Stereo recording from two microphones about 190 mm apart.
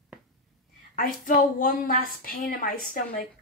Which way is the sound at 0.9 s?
45° left (ahead or behind).